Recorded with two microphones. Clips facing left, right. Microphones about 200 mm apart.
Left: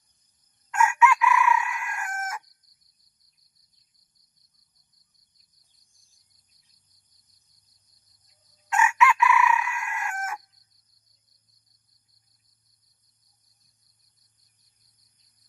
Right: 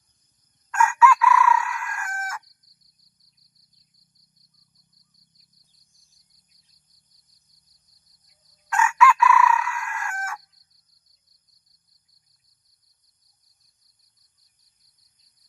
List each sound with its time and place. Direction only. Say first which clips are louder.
0.7 s chicken: right 2 dB; 20° left (ahead or behind)
8.7 s chicken: right 3 dB; 20° left (ahead or behind)